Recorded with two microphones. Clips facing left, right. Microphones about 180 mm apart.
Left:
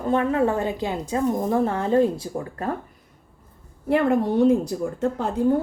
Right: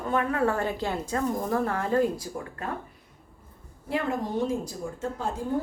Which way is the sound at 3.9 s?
60° left (ahead or behind).